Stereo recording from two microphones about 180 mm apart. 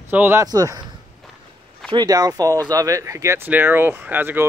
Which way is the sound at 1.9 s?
20° right (ahead or behind).